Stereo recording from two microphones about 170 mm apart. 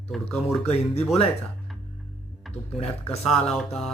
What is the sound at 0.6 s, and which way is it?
Speech, 35° left (ahead or behind).